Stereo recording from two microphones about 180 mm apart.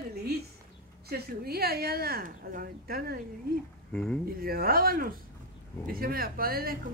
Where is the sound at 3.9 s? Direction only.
5° left (ahead or behind).